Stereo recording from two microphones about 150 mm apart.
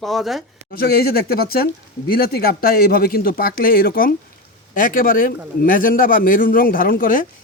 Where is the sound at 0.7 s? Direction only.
90° left.